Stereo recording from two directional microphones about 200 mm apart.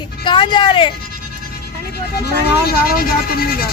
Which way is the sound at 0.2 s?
25° left (ahead or behind).